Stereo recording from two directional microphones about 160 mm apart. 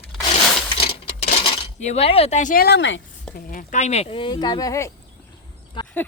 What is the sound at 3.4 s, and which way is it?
Speech, 60° left (ahead or behind).